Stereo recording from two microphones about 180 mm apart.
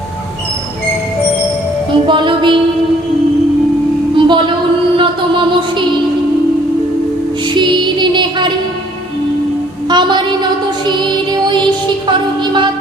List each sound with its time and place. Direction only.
2.0 s music: 25° right (ahead or behind)
4.1 s a sound: 25° right (ahead or behind)
5.5 s music: 25° right (ahead or behind)
7.5 s music: 25° right (ahead or behind)
9.9 s a sound: 25° right (ahead or behind)
10.8 s music: 25° right (ahead or behind)